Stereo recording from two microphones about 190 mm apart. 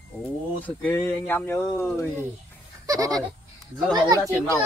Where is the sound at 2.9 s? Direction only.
20° right (ahead or behind).